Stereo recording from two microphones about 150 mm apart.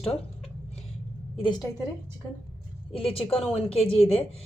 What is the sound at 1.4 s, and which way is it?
Speech, 30° left (ahead or behind).